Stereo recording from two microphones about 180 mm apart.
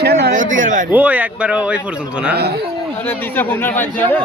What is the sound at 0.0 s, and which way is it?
Speech, 65° right (ahead or behind).